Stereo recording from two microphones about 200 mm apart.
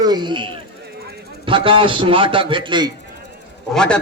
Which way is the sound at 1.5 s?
25° right (ahead or behind).